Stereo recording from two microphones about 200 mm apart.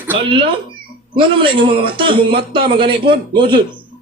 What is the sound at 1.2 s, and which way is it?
Speech, 25° right (ahead or behind).